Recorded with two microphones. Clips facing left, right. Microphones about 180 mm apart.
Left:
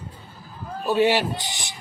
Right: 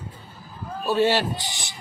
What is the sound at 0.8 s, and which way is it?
Speech, 15° left (ahead or behind).